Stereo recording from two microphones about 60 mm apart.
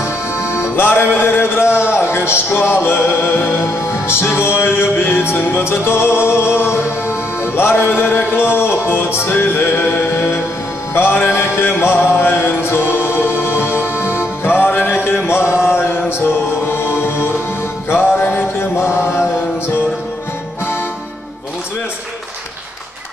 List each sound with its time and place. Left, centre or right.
0.5 s music: left
11.0 s mantra: left
14.1 s music: left
15.6 s chant: left
16.3 s music: left
17.8 s mantra: left